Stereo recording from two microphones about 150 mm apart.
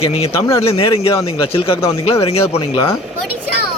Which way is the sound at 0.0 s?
40° left (ahead or behind).